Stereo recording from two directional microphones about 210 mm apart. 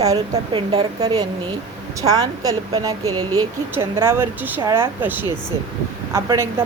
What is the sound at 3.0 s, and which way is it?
Speech, 90° right.